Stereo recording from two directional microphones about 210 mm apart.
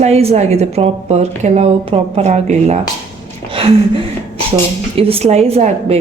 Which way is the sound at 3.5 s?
25° right (ahead or behind).